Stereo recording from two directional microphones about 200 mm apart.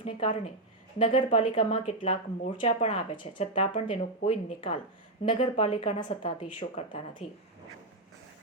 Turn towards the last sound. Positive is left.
turn(degrees=30)  # may be behind; listen again after turning